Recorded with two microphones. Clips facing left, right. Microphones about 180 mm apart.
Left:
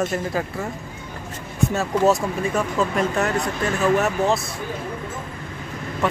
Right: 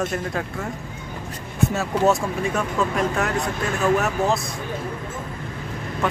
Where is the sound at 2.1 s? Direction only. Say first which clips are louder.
Left 1 dB; centre (ahead or behind).